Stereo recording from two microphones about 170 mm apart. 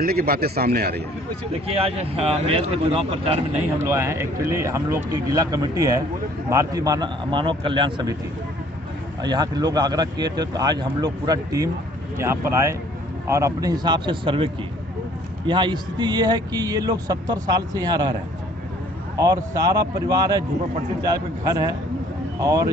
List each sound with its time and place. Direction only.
0.0 s speech: 60° right (ahead or behind)
1.8 s speech: 35° right (ahead or behind)
3.7 s speech: 15° right (ahead or behind)
9.2 s speech: 25° right (ahead or behind)
19.1 s speech: 20° right (ahead or behind)